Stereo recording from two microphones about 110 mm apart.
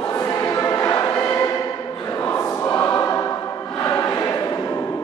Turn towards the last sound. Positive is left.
turn(degrees=25)  # may be behind; listen again after turning